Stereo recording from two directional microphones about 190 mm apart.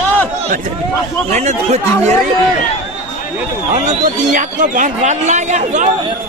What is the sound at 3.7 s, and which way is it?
Speech, 45° right (ahead or behind).